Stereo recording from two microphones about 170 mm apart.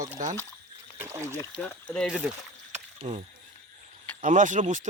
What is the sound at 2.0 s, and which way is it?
Speech, 5° right (ahead or behind).